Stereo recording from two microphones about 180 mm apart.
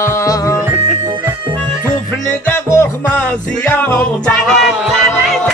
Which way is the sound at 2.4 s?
15° left (ahead or behind).